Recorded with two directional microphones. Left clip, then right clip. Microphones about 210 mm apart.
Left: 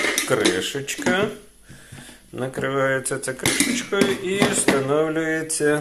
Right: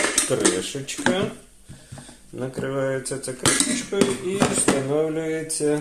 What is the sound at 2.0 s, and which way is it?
Speech, 10° left (ahead or behind).